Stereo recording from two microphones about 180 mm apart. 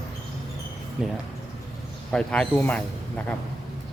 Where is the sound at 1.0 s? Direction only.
Centre (ahead or behind).